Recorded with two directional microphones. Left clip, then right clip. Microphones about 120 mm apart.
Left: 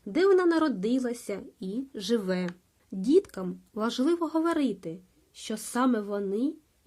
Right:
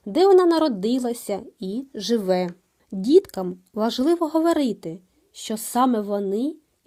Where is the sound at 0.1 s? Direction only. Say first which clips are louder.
Right 7 dB; 30° right (ahead or behind).